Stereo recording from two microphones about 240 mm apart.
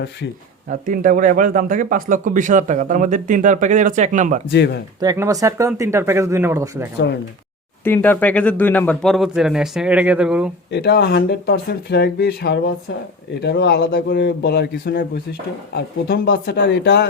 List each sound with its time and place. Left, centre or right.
0.7 s speech: right
4.5 s a man's voice: left
4.9 s speech: centre
7.9 s speech: centre
10.7 s a man's voice: left